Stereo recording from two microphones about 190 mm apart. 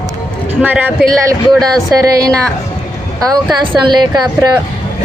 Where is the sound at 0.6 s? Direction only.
5° right (ahead or behind).